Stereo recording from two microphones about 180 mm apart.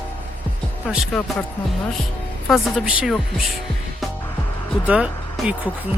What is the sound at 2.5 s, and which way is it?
Speech, centre (ahead or behind).